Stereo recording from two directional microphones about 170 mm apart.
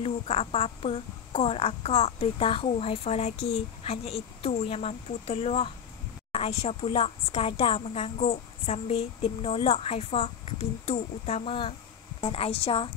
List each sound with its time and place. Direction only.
0.0 s a woman's voice: 35° left (ahead or behind)